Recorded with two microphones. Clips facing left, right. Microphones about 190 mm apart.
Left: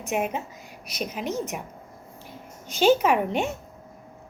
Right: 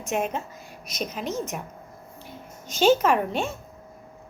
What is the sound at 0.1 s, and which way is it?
A woman's voice, 10° left (ahead or behind).